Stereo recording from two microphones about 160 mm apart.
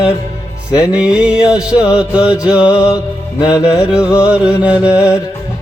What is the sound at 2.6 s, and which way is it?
Music, 30° left (ahead or behind).